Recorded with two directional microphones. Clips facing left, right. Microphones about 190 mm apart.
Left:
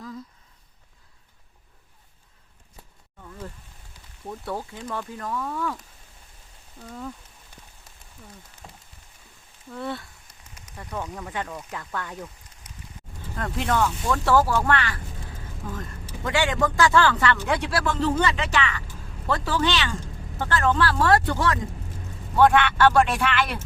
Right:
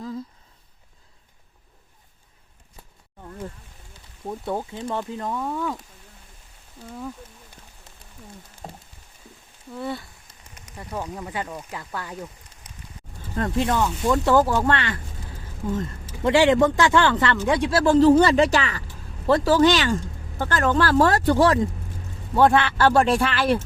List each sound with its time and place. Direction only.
4.3 s speech: 20° right (ahead or behind)
6.8 s speech: 5° right (ahead or behind)
8.6 s speech: 40° right (ahead or behind)
9.7 s speech: 5° right (ahead or behind)
13.7 s speech: 15° right (ahead or behind)
16.2 s speech: 25° right (ahead or behind)